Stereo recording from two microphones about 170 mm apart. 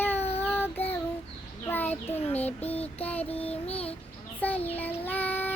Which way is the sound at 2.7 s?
35° left (ahead or behind).